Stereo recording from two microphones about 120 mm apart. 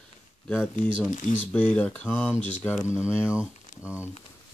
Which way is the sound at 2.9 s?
10° right (ahead or behind).